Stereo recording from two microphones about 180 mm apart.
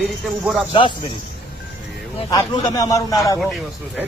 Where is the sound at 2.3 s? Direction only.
20° left (ahead or behind).